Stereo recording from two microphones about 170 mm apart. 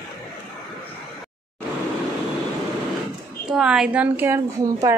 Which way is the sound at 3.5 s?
5° right (ahead or behind).